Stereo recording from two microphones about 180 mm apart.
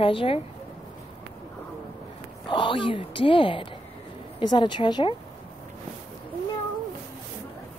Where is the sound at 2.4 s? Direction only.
25° left (ahead or behind).